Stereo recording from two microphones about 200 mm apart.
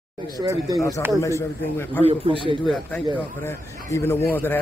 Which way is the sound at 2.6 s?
5° left (ahead or behind).